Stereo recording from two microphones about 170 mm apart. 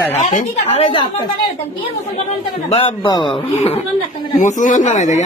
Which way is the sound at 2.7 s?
30° left (ahead or behind).